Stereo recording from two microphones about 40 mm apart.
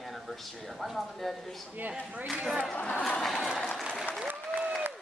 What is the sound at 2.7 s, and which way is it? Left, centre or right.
Speech, left.